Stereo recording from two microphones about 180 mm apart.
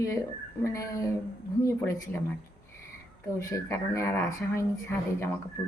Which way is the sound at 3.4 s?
15° left (ahead or behind).